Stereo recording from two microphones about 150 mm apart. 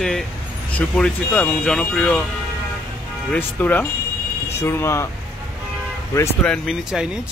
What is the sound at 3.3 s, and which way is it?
Speech, 10° left (ahead or behind).